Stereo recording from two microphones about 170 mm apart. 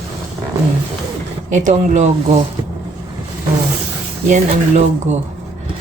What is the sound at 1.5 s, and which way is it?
Speech, 45° right (ahead or behind).